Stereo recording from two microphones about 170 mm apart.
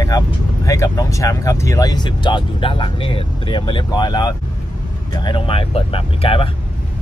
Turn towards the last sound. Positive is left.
turn(degrees=30)  # may be behind; listen again after turning